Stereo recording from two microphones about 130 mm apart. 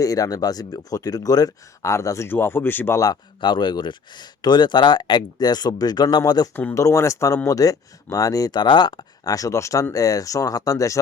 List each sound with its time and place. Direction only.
0.0 s speech: 25° left (ahead or behind)
3.0 s speech: 35° left (ahead or behind)
6.5 s speech: 15° left (ahead or behind)